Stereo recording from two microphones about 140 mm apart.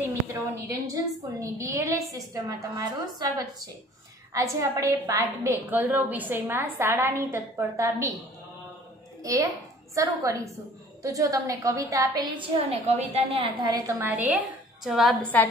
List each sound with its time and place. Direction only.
0.0 s a sound: 20° right (ahead or behind)
1.4 s a woman's voice: 20° right (ahead or behind)
9.2 s a woman's voice: 25° right (ahead or behind)
12.4 s a woman's voice: 45° right (ahead or behind); by 14.0 s 25° right (ahead or behind)
14.3 s a woman's voice: centre (ahead or behind)